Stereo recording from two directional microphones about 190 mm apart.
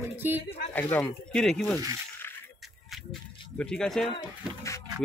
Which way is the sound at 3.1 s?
5° left (ahead or behind).